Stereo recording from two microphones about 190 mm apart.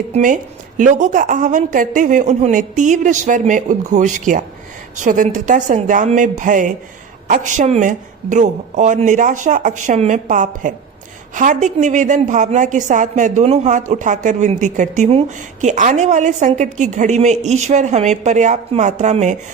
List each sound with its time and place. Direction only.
0.1 s a woman's voice: 45° right (ahead or behind)